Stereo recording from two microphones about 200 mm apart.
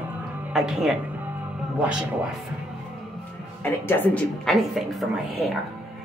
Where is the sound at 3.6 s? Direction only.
10° left (ahead or behind).